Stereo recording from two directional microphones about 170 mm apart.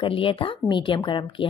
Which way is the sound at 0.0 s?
30° left (ahead or behind).